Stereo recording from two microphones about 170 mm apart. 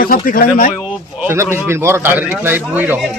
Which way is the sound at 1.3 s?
15° right (ahead or behind).